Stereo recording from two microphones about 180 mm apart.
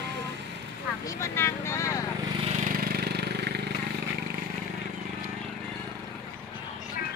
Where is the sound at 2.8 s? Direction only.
60° right (ahead or behind).